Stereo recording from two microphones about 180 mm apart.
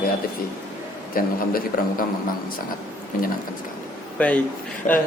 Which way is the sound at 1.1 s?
55° left (ahead or behind).